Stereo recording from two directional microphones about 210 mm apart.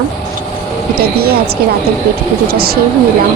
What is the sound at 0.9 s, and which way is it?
Speech, 45° right (ahead or behind).